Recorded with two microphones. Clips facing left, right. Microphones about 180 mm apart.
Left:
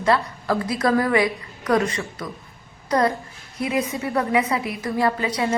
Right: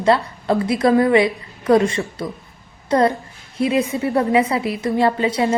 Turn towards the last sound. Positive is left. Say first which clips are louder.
# right 4 dB
turn(degrees=-30)  # may be behind; listen again after turning